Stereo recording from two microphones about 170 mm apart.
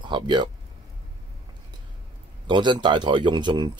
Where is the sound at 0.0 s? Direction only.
25° right (ahead or behind).